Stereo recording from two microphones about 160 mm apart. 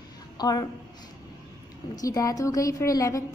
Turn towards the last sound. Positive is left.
turn(degrees=20)  # may be behind; listen again after turning